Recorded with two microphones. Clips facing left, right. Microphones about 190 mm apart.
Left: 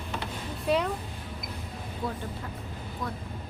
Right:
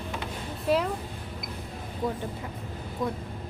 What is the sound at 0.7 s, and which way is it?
Speech, centre (ahead or behind).